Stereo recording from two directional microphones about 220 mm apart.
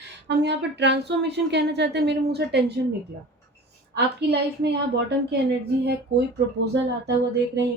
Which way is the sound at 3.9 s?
50° right (ahead or behind).